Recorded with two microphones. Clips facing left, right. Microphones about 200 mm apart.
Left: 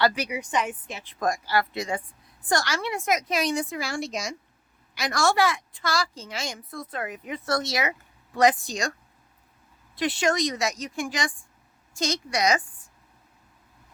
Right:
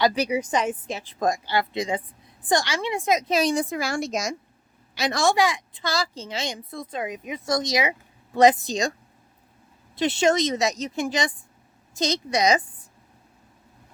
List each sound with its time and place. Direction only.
0.1 s speech: 30° right (ahead or behind)
1.2 s a woman's voice: 20° right (ahead or behind)
3.7 s speech: 45° right (ahead or behind)
4.9 s a woman's voice: 20° right (ahead or behind)
9.9 s a woman's voice: 25° right (ahead or behind)